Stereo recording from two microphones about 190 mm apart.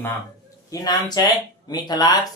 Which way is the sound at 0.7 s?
20° left (ahead or behind).